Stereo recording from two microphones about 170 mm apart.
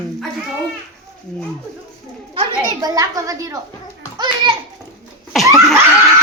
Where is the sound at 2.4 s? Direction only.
20° right (ahead or behind).